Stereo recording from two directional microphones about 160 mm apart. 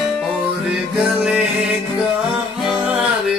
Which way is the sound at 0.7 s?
5° right (ahead or behind).